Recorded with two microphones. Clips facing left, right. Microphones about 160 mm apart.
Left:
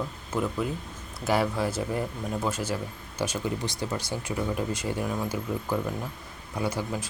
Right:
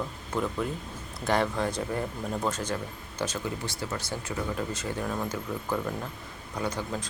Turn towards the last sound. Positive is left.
turn(degrees=10)  # may be behind; listen again after turning